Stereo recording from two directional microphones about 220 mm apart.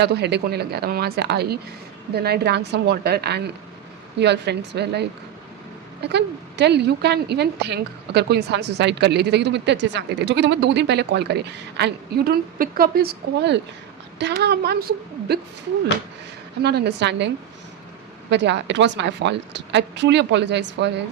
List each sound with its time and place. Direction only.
0.0 s a woman's voice: 50° right (ahead or behind)
16.6 s a woman's voice: 50° right (ahead or behind)